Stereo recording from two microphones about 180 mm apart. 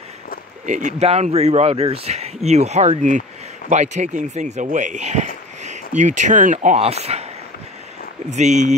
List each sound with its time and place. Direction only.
0.7 s speech: 45° right (ahead or behind)
8.3 s speech: 40° right (ahead or behind)